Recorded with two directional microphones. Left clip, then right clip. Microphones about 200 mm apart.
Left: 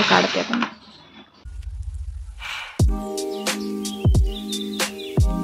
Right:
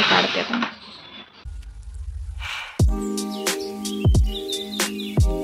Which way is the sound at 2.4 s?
Centre (ahead or behind).